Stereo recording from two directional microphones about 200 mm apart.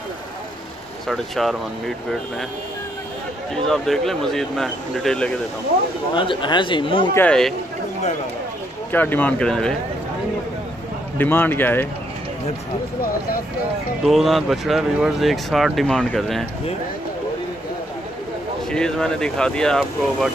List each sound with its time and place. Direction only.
1.0 s speech: centre (ahead or behind)
3.6 s speech: centre (ahead or behind)
6.1 s speech: 25° left (ahead or behind)
7.2 s speech: 5° left (ahead or behind)
8.9 s speech: 10° left (ahead or behind)
11.1 s speech: 10° left (ahead or behind)
14.0 s speech: centre (ahead or behind)
18.7 s speech: 5° left (ahead or behind)